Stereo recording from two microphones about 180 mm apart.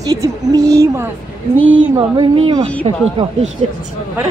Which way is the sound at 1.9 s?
25° right (ahead or behind).